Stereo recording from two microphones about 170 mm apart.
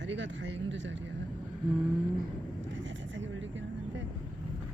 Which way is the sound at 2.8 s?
90° right.